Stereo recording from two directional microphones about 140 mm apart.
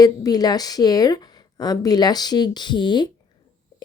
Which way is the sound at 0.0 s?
25° left (ahead or behind).